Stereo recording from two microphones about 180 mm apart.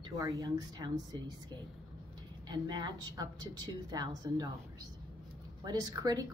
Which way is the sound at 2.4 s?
25° right (ahead or behind).